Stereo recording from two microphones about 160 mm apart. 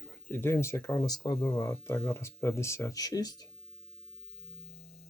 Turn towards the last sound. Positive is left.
turn(degrees=25)  # may be behind; listen again after turning